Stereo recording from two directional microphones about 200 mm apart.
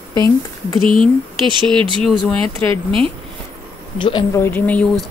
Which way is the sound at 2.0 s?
Centre (ahead or behind).